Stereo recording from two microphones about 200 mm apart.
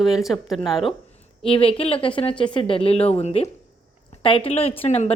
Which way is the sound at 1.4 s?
30° left (ahead or behind).